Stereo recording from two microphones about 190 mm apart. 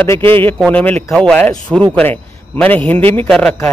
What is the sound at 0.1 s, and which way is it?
A man's voice, 10° left (ahead or behind).